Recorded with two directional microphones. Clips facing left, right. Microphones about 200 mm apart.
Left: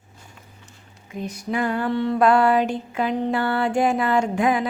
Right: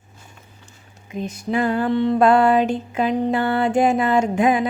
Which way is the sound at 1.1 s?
25° right (ahead or behind).